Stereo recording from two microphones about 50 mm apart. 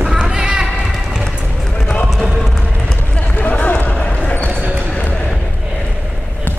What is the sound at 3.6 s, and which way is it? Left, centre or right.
Basketball bounce, left.